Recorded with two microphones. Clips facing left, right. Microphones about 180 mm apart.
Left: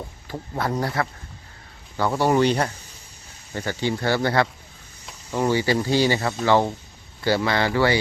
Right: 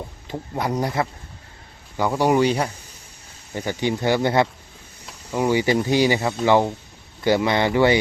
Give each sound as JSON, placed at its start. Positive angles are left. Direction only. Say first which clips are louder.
{"t": 0.3, "sound": "speech", "louder": "right 1 dB", "side_deg": -20}
{"t": 5.0, "sound": "speech", "louder": "right 1 dB", "side_deg": -5}